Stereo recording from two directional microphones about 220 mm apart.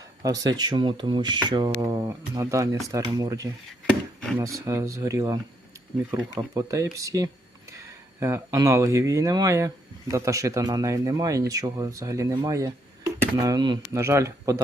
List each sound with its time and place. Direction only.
0.2 s speech: 20° right (ahead or behind)